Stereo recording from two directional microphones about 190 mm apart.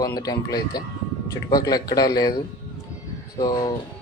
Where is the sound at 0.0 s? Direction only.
20° left (ahead or behind).